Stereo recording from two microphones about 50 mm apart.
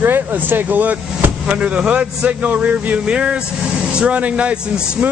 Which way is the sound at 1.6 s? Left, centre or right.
Centre.